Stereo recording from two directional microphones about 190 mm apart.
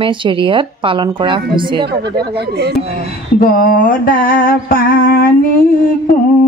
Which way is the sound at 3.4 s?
45° left (ahead or behind).